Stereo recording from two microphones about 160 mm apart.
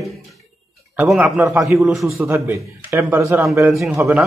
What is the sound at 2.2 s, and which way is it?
A man's voice, 15° right (ahead or behind).